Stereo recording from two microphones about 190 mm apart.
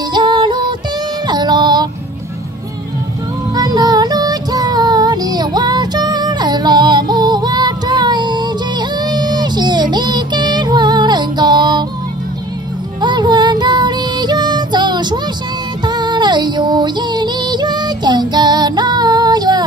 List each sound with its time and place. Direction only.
0.1 s music: 25° right (ahead or behind)
1.2 s child singing: 20° right (ahead or behind)
3.5 s female singing: 20° right (ahead or behind)
13.0 s music: 25° right (ahead or behind)